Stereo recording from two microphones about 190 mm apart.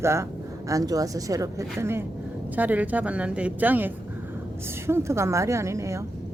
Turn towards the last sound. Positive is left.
turn(degrees=-15)  # may be behind; listen again after turning